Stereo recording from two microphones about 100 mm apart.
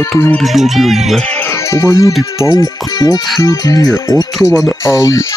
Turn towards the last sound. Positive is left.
turn(degrees=30)  # may be behind; listen again after turning